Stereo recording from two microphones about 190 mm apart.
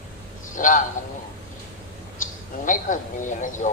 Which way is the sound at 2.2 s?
45° left (ahead or behind).